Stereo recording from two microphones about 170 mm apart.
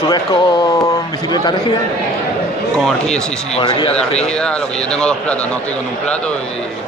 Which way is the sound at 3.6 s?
30° left (ahead or behind).